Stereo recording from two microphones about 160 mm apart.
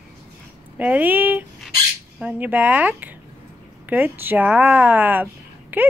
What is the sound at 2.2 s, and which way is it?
A woman's voice, 10° right (ahead or behind).